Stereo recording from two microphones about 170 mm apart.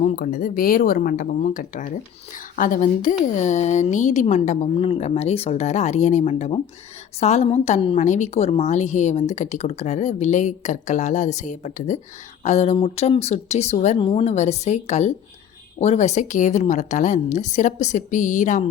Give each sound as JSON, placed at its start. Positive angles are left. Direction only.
{"t": 0.0, "sound": "speech", "side_deg": 60}